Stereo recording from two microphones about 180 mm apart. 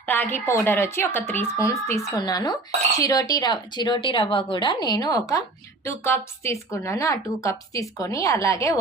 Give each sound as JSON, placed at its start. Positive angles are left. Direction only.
{"t": 0.0, "sound": "a woman's voice", "side_deg": 10}